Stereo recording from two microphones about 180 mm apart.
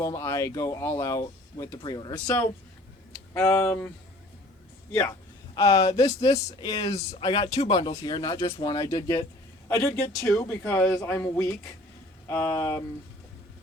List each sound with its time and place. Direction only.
0.0 s speech: 15° left (ahead or behind)